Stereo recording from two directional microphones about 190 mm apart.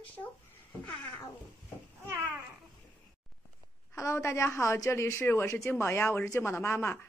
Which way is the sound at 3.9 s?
15° left (ahead or behind).